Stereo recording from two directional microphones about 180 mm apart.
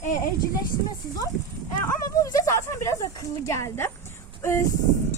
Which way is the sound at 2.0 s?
20° left (ahead or behind).